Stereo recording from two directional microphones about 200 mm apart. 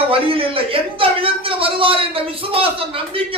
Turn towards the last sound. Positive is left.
turn(degrees=-25)  # may be behind; listen again after turning